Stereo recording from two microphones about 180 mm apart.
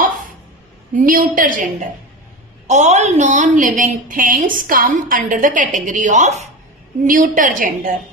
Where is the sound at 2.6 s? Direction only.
40° right (ahead or behind).